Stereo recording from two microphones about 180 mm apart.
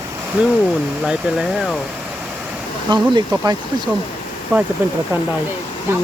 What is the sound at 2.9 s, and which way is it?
Speech, 25° right (ahead or behind).